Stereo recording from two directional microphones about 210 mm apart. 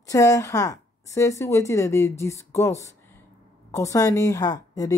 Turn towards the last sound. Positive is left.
turn(degrees=15)  # may be behind; listen again after turning